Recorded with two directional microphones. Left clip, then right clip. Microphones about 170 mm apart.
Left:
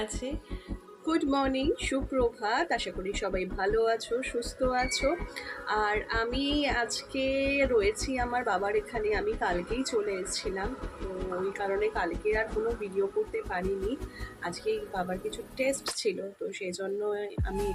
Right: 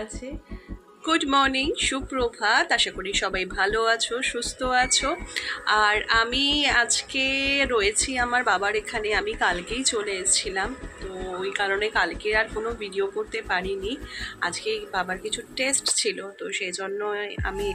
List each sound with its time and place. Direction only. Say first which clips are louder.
1.0 s speech: right 7 dB; 15° left (ahead or behind)